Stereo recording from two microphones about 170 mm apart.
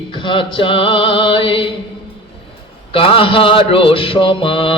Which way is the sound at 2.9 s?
30° left (ahead or behind).